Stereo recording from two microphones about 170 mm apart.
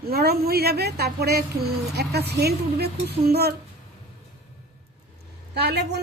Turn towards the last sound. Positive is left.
turn(degrees=-75)  # may be behind; listen again after turning